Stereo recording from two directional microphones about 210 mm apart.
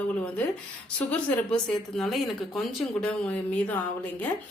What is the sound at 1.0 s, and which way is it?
A woman's voice, 5° left (ahead or behind).